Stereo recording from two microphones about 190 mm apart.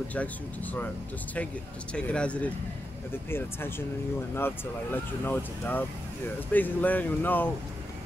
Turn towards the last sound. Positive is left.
turn(degrees=10)  # may be behind; listen again after turning